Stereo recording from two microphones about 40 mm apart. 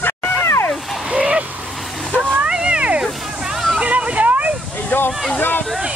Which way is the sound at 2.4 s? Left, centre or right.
Right.